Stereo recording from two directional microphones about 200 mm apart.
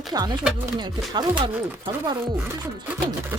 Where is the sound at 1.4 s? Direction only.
25° right (ahead or behind).